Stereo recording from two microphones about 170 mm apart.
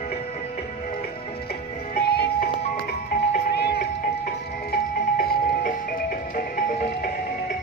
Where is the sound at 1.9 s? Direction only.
65° left (ahead or behind).